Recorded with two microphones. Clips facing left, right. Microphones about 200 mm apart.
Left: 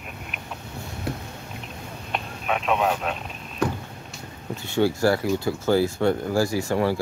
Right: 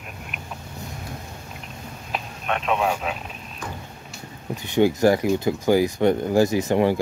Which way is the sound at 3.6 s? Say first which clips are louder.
Left 10 dB; 70° left (ahead or behind).